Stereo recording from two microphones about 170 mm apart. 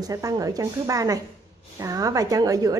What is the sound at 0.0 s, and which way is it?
A woman's voice, 20° right (ahead or behind).